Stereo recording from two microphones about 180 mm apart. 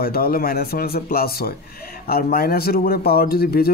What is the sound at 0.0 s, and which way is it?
A man's voice, 55° left (ahead or behind).